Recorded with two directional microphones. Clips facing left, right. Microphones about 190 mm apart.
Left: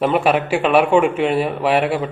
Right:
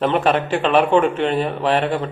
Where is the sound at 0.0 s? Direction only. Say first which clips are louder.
Left 1 dB; 10° left (ahead or behind).